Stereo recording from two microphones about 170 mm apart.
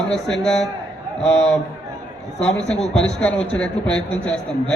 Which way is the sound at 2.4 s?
5° left (ahead or behind).